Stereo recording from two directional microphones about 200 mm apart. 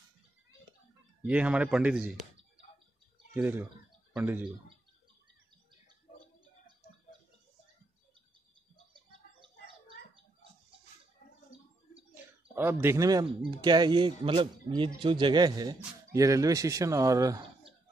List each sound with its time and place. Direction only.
1.2 s speech: 5° right (ahead or behind)
3.3 s speech: 10° right (ahead or behind)
12.5 s speech: 10° right (ahead or behind)